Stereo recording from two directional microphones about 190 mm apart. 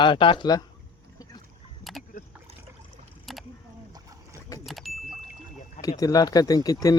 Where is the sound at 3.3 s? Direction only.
Centre (ahead or behind).